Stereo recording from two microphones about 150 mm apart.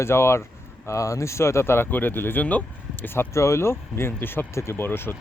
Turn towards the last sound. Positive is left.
turn(degrees=15)  # may be behind; listen again after turning